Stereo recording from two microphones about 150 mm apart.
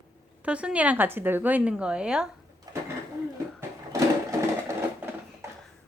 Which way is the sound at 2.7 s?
25° right (ahead or behind).